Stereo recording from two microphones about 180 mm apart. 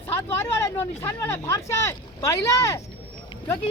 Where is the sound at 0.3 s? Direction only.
15° left (ahead or behind).